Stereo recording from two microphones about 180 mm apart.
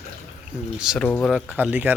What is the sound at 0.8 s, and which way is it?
Speech, 5° right (ahead or behind).